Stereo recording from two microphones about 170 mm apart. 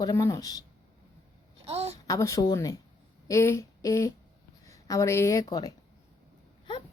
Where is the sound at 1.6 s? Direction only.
40° right (ahead or behind).